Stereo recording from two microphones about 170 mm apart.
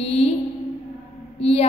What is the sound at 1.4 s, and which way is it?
Speech, 35° left (ahead or behind).